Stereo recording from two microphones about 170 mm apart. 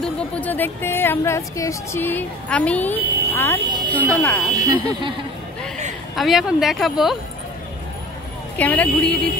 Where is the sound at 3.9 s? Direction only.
10° left (ahead or behind).